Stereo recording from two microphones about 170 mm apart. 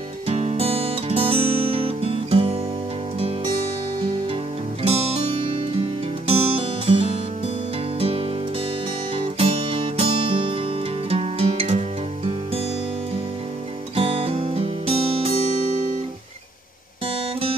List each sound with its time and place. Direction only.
0.3 s music: 40° right (ahead or behind)
4.8 s music: 35° right (ahead or behind)
13.9 s guitar: 35° right (ahead or behind)